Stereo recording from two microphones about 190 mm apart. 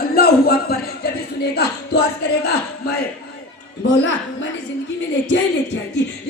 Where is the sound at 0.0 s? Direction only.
55° left (ahead or behind).